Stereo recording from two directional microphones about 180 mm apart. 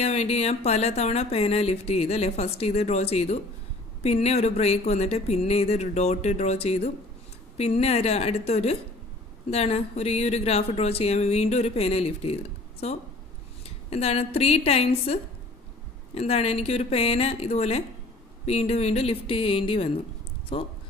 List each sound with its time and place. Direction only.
0.0 s speech: 35° left (ahead or behind)